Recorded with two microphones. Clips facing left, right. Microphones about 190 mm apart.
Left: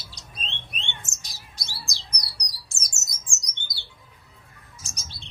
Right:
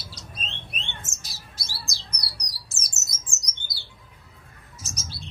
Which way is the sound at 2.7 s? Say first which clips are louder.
Right 1 dB; centre (ahead or behind).